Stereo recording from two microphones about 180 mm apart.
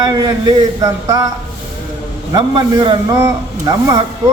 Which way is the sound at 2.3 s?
25° right (ahead or behind).